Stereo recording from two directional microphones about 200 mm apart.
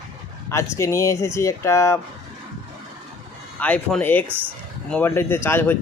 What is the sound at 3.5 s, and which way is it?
Speech, 5° left (ahead or behind).